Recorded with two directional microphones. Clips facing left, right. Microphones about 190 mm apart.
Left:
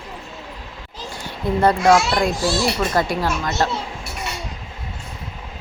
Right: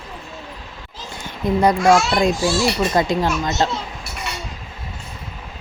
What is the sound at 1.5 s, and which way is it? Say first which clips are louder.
A child's voice: even; 15° right (ahead or behind).